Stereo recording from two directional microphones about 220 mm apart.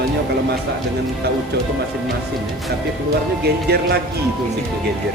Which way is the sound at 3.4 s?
45° right (ahead or behind).